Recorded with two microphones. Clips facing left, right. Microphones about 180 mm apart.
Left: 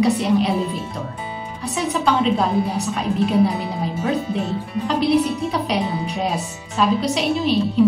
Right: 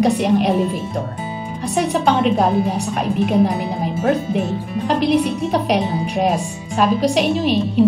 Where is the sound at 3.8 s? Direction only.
70° right (ahead or behind).